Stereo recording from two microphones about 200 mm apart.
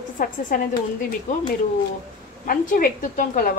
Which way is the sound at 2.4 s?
45° left (ahead or behind).